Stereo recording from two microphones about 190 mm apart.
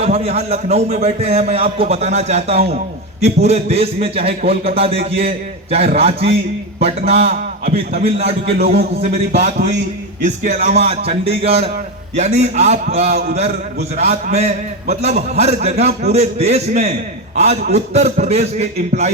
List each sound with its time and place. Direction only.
0.0 s a man's voice: 30° right (ahead or behind)
9.0 s a man's voice: 35° right (ahead or behind)